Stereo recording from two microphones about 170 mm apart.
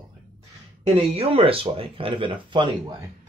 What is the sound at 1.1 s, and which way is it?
Speech, 35° right (ahead or behind).